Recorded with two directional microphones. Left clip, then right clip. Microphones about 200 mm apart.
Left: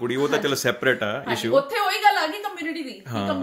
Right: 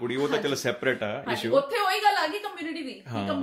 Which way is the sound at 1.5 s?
Centre (ahead or behind).